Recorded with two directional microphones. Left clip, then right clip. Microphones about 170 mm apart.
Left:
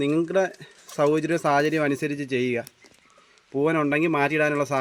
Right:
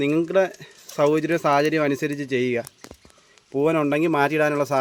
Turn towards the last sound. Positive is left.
turn(degrees=-20)  # may be behind; listen again after turning